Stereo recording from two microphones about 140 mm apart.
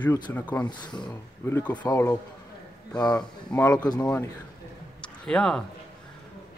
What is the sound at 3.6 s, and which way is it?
Speech, 25° left (ahead or behind).